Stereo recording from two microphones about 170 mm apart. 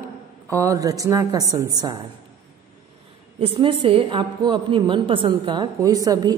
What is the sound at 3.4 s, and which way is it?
A woman's voice, 30° right (ahead or behind).